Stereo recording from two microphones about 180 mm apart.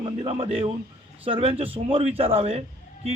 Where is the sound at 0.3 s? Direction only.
30° right (ahead or behind).